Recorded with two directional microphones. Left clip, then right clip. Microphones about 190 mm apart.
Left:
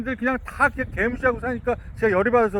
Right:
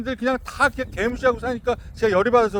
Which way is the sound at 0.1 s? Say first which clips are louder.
Right 2 dB; 20° left (ahead or behind).